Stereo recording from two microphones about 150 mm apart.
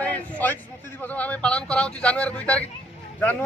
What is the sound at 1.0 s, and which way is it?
A man's voice, 10° left (ahead or behind).